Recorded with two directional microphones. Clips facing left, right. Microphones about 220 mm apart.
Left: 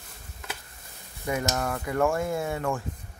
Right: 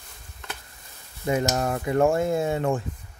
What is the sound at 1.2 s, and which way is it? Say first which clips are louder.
Speech: right 4 dB; 25° right (ahead or behind).